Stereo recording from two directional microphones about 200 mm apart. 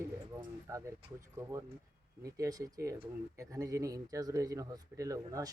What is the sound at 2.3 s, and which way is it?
Speech, 15° right (ahead or behind).